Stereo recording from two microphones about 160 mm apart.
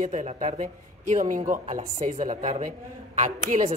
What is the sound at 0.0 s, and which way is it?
Speech, 50° right (ahead or behind).